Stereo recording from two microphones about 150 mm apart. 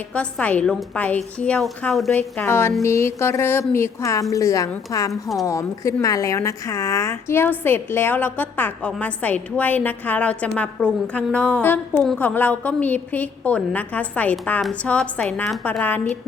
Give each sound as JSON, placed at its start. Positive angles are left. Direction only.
{"t": 0.1, "sound": "a woman's voice", "side_deg": 10}